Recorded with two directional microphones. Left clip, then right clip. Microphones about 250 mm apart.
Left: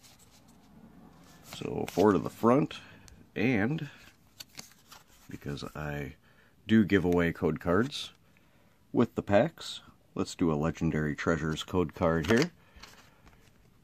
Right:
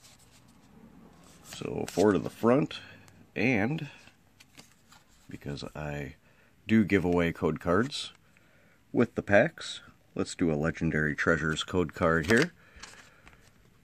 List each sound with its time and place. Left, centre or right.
1.5 s speech: centre
4.6 s a sound: left
5.3 s speech: centre